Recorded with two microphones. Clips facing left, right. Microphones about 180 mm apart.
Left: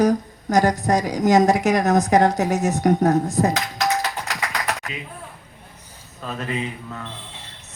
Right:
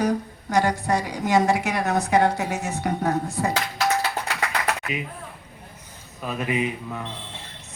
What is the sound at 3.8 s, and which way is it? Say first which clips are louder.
Typewriter: even; 40° left (ahead or behind).